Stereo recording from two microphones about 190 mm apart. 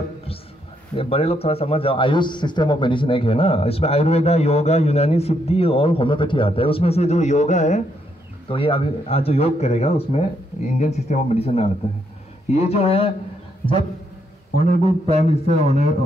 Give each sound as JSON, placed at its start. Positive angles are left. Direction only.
{"t": 0.9, "sound": "a man's voice", "side_deg": 30}
{"t": 14.8, "sound": "a man's voice", "side_deg": -30}